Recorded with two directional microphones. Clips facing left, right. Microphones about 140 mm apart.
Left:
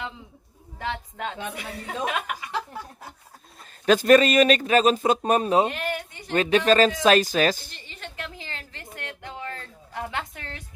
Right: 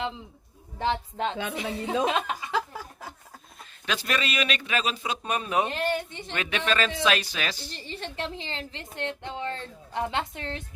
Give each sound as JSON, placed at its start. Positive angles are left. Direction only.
{"t": 0.8, "sound": "speech", "side_deg": -30}
{"t": 3.8, "sound": "a man's voice", "side_deg": 45}
{"t": 5.7, "sound": "a woman's voice", "side_deg": -30}
{"t": 6.3, "sound": "speech", "side_deg": 35}
{"t": 7.9, "sound": "a woman's voice", "side_deg": -35}